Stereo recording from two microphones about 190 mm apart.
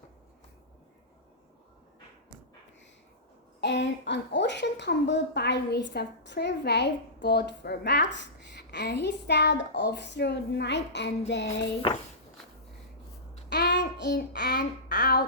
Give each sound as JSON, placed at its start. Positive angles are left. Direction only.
{"t": 3.6, "sound": "a woman's voice", "side_deg": 65}
{"t": 13.5, "sound": "child singing", "side_deg": 65}
{"t": 14.0, "sound": "a woman's voice", "side_deg": 60}